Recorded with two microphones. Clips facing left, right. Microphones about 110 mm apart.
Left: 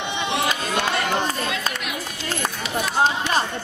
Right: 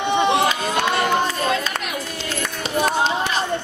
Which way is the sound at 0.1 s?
45° right (ahead or behind).